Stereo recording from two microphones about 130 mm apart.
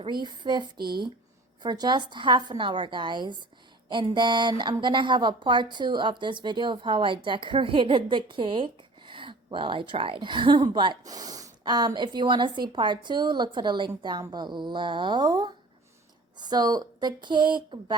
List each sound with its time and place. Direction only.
0.0 s speech: 35° right (ahead or behind)